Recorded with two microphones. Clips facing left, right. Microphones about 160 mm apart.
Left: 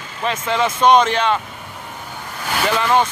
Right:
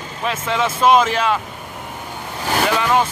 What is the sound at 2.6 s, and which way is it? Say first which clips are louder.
Speech: left 1 dB; centre (ahead or behind).